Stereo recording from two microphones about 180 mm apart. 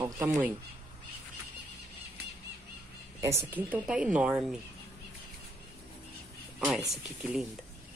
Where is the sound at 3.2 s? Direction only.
10° right (ahead or behind).